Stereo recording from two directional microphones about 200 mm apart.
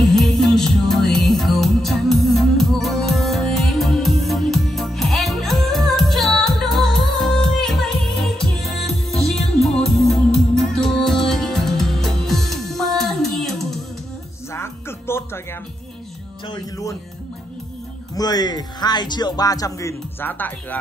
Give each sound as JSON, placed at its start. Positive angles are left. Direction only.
{"t": 0.0, "sound": "music", "side_deg": 0}
{"t": 14.5, "sound": "music", "side_deg": 10}
{"t": 16.4, "sound": "music", "side_deg": 15}
{"t": 18.1, "sound": "speech", "side_deg": 20}